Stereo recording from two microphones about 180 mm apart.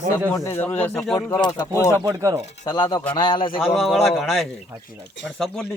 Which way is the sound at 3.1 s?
25° left (ahead or behind).